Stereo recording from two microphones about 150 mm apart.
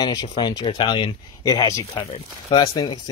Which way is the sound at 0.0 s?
30° left (ahead or behind).